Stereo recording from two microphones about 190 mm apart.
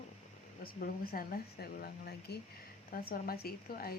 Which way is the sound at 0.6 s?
50° left (ahead or behind).